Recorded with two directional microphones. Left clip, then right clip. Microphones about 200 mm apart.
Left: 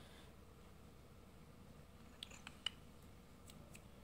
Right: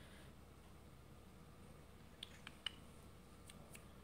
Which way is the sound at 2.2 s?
15° left (ahead or behind).